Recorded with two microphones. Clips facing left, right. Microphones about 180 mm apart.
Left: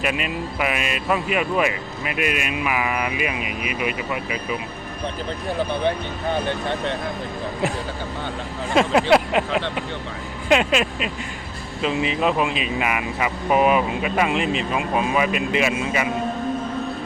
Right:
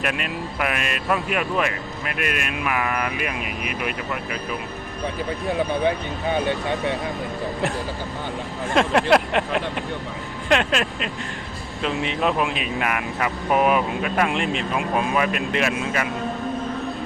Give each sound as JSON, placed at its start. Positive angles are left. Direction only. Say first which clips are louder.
{"t": 0.0, "sound": "speech", "louder": "left 2 dB", "side_deg": 0}
{"t": 6.4, "sound": "speech", "louder": "right 1 dB", "side_deg": -15}
{"t": 8.7, "sound": "speech", "louder": "left 1 dB", "side_deg": 0}